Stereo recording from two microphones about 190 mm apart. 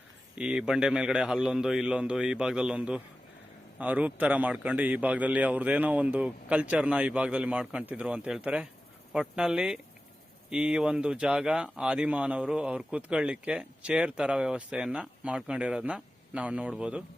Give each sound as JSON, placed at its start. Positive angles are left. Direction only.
{"t": 0.3, "sound": "a man's voice", "side_deg": -5}